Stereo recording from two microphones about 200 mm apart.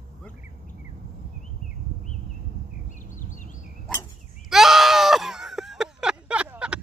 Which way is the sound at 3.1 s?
40° left (ahead or behind).